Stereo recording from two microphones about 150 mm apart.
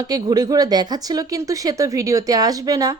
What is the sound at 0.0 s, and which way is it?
A woman's voice, 25° right (ahead or behind).